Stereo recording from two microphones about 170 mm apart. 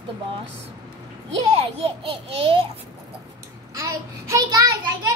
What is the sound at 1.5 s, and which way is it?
A child's voice, 35° right (ahead or behind).